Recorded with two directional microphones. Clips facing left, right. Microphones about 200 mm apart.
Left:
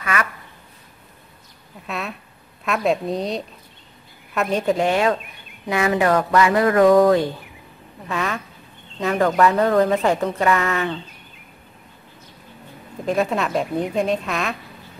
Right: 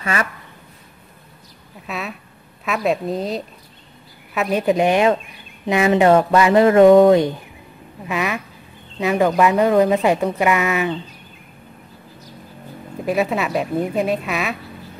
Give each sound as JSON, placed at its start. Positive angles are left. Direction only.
{"t": 0.0, "sound": "speech", "side_deg": -30}
{"t": 1.9, "sound": "a sound", "side_deg": 0}
{"t": 2.6, "sound": "a woman's voice", "side_deg": 0}
{"t": 4.7, "sound": "a woman's voice", "side_deg": -20}
{"t": 13.0, "sound": "speech", "side_deg": -5}